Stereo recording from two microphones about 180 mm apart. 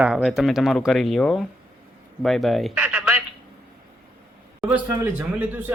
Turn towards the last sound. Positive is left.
turn(degrees=-10)  # may be behind; listen again after turning